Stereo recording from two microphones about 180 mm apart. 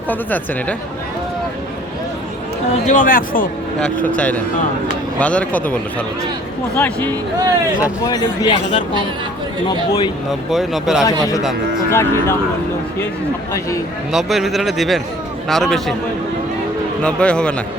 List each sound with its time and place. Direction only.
0.1 s a woman's voice: 10° left (ahead or behind)
2.8 s speech: 50° left (ahead or behind)
4.0 s a woman's voice: 10° left (ahead or behind)
7.8 s speech: 20° left (ahead or behind)
10.5 s speech: centre (ahead or behind)
11.9 s a woman's voice: 15° left (ahead or behind)
13.5 s a woman's voice: 15° left (ahead or behind)
14.1 s speech: centre (ahead or behind)
17.0 s speech: 5° left (ahead or behind)